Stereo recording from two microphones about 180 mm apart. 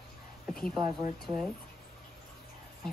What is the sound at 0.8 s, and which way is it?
Speech, 5° right (ahead or behind).